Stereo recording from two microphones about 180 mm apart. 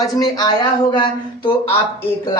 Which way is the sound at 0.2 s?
20° left (ahead or behind).